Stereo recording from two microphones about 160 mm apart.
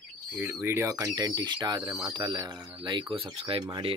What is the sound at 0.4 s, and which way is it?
Speech, 10° right (ahead or behind).